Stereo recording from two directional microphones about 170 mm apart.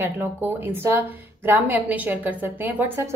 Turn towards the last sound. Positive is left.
turn(degrees=-15)  # may be behind; listen again after turning